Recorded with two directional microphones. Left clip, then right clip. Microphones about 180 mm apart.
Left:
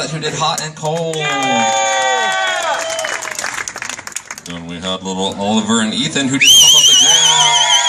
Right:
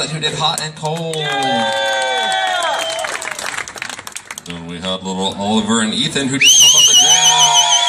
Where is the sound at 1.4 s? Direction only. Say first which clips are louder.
Left 3 dB; 50° left (ahead or behind).